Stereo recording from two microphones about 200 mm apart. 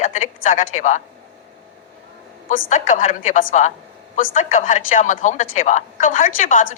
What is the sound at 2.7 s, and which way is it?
Speech, 40° left (ahead or behind).